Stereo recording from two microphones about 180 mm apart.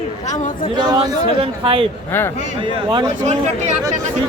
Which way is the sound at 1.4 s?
30° right (ahead or behind).